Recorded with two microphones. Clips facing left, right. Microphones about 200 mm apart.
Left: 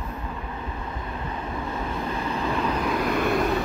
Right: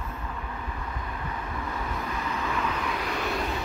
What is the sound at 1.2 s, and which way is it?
Vehicle, 25° left (ahead or behind).